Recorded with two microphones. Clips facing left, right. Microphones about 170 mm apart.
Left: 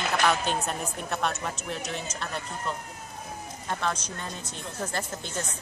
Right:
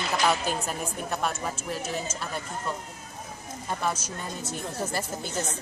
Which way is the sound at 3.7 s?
10° right (ahead or behind).